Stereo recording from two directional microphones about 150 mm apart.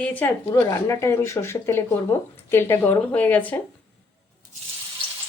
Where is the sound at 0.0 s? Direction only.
10° left (ahead or behind).